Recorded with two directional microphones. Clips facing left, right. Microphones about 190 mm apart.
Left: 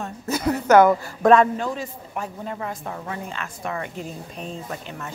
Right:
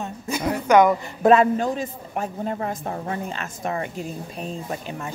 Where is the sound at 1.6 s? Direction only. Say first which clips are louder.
Right 3 dB; 40° right (ahead or behind).